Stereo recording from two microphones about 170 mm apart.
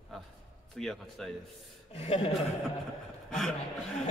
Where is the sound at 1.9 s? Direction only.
35° left (ahead or behind).